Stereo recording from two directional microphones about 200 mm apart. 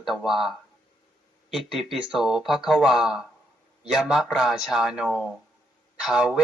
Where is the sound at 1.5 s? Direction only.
Centre (ahead or behind).